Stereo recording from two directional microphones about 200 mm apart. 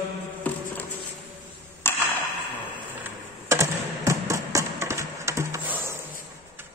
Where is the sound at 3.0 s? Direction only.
15° right (ahead or behind).